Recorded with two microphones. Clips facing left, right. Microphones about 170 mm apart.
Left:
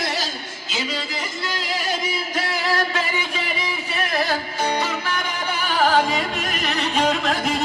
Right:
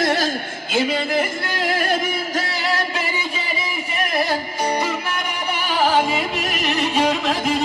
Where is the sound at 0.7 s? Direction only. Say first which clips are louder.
Right 8 dB; 55° right (ahead or behind).